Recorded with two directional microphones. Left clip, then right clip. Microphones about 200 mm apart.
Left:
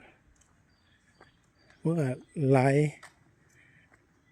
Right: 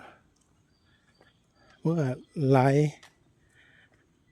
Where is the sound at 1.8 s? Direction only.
15° right (ahead or behind).